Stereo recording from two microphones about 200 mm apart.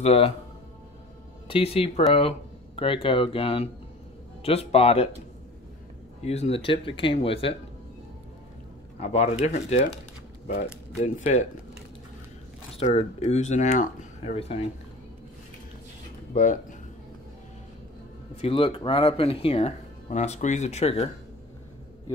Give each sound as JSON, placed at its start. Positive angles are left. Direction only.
{"t": 0.0, "sound": "speech", "side_deg": 30}
{"t": 1.5, "sound": "speech", "side_deg": 30}
{"t": 6.2, "sound": "speech", "side_deg": 30}
{"t": 9.0, "sound": "speech", "side_deg": 35}
{"t": 11.0, "sound": "speech", "side_deg": 35}
{"t": 12.7, "sound": "speech", "side_deg": 30}
{"t": 16.3, "sound": "speech", "side_deg": 40}
{"t": 18.4, "sound": "speech", "side_deg": 25}